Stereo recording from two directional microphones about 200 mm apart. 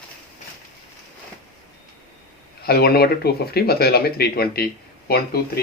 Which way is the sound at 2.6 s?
50° left (ahead or behind).